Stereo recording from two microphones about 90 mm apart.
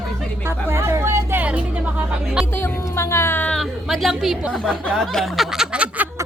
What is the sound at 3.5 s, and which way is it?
A woman's voice, centre (ahead or behind).